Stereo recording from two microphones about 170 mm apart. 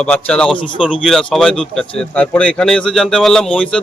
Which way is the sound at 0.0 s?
5° left (ahead or behind).